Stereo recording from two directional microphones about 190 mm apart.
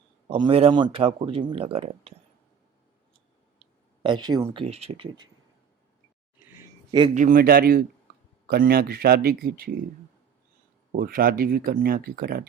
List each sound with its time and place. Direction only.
0.3 s speech: 25° right (ahead or behind)
4.0 s speech: 25° right (ahead or behind)
4.6 s speech: 30° right (ahead or behind)
7.1 s speech: 40° right (ahead or behind)
10.9 s speech: 50° right (ahead or behind)